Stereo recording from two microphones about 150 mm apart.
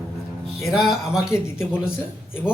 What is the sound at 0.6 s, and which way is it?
Speech, centre (ahead or behind).